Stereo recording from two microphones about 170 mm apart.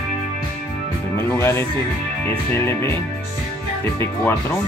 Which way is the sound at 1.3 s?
15° left (ahead or behind).